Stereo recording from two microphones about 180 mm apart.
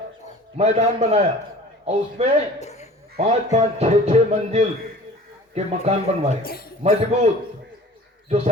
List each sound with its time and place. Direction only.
0.5 s speech: 35° right (ahead or behind)
2.6 s a sound: 35° left (ahead or behind)
3.2 s speech: 35° right (ahead or behind)
6.4 s a man's voice: 55° left (ahead or behind)
6.8 s speech: 35° right (ahead or behind)